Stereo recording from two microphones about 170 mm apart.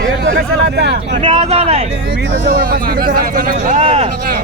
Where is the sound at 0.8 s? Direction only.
75° right (ahead or behind).